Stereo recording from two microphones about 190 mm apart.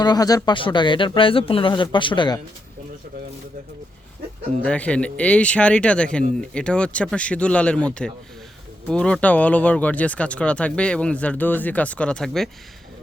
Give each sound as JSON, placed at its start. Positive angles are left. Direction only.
{"t": 0.0, "sound": "speech", "side_deg": 20}
{"t": 4.6, "sound": "speech", "side_deg": 5}